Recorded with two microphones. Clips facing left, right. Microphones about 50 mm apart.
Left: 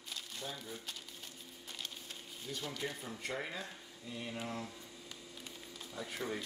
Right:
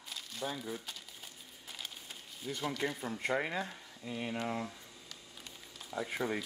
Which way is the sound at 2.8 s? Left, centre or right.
Right.